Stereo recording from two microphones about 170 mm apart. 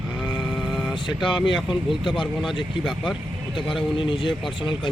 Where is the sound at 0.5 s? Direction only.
5° left (ahead or behind).